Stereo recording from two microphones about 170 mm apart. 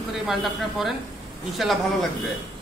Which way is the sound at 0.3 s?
Centre (ahead or behind).